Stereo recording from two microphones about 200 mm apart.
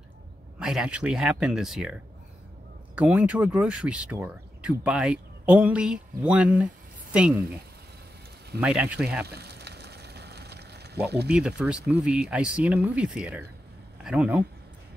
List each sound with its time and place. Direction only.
0.6 s speech: 5° right (ahead or behind)
3.0 s speech: 5° right (ahead or behind)
8.5 s speech: 5° right (ahead or behind)
9.3 s a sound: 55° right (ahead or behind)
11.1 s speech: 55° right (ahead or behind)
11.3 s speech: 5° right (ahead or behind)